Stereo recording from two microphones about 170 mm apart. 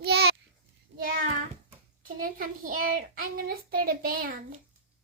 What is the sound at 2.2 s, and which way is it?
Speech, 55° right (ahead or behind).